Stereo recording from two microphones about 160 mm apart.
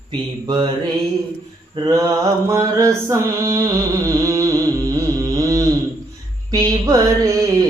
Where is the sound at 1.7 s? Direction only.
25° right (ahead or behind).